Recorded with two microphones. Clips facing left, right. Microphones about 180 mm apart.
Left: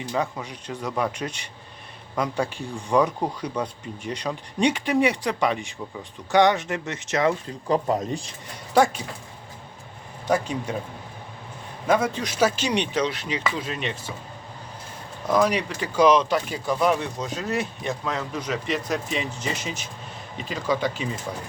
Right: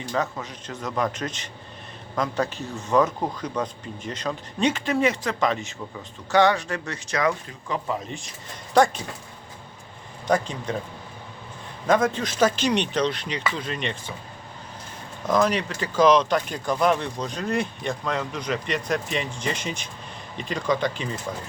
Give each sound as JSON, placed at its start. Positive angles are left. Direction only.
{"t": 0.1, "sound": "speech", "side_deg": 10}
{"t": 7.9, "sound": "speech", "side_deg": 35}
{"t": 10.2, "sound": "speech", "side_deg": 10}
{"t": 11.9, "sound": "speech", "side_deg": 10}
{"t": 15.3, "sound": "speech", "side_deg": 10}